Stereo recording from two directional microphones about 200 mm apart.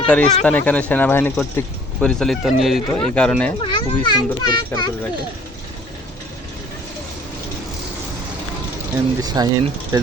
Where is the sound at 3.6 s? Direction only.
20° left (ahead or behind).